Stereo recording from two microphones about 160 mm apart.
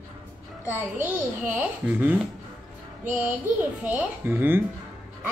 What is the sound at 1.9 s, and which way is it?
Speech, 10° right (ahead or behind).